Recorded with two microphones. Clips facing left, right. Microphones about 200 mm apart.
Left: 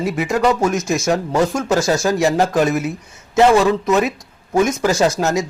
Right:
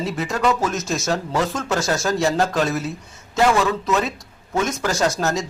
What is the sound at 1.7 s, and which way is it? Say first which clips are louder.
Speech: left 4 dB; centre (ahead or behind).